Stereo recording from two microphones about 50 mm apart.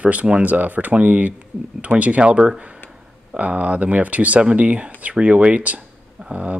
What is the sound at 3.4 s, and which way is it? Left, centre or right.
Speech, right.